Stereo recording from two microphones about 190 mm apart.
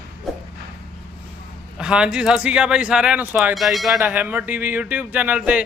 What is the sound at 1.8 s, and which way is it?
Speech, 5° right (ahead or behind).